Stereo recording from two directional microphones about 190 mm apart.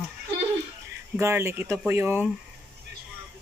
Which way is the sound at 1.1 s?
15° right (ahead or behind).